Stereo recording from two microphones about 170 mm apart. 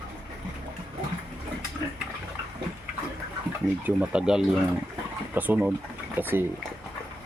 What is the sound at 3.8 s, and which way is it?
Speech, 5° right (ahead or behind).